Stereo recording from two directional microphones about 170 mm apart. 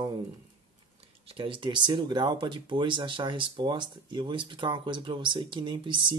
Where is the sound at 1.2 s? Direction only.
30° right (ahead or behind).